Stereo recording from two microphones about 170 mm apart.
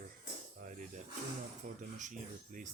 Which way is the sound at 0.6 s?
50° right (ahead or behind).